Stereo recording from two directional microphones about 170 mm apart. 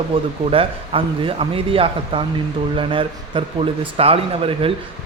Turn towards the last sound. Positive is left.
turn(degrees=-35)  # may be behind; listen again after turning